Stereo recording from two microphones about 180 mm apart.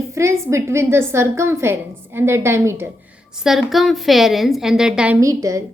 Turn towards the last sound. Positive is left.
turn(degrees=-20)  # may be behind; listen again after turning